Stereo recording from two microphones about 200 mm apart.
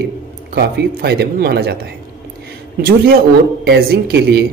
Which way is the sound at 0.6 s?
55° right (ahead or behind).